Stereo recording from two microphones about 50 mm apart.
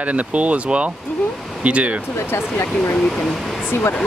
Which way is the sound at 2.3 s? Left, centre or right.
Left.